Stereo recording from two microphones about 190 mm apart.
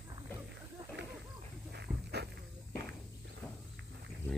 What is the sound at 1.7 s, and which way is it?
Dog, 60° right (ahead or behind).